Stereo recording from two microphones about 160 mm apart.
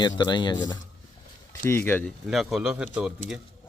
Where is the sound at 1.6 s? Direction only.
15° left (ahead or behind).